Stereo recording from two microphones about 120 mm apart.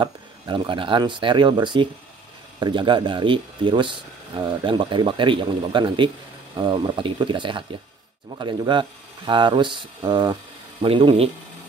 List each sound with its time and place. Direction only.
0.0 s speech: 45° right (ahead or behind)